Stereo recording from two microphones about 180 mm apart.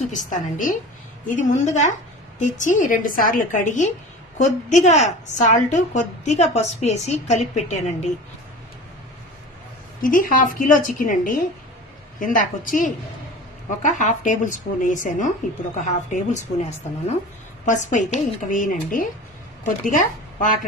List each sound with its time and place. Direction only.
0.0 s a woman's voice: 45° left (ahead or behind)
10.0 s a woman's voice: 50° left (ahead or behind)
17.6 s a woman's voice: 45° left (ahead or behind)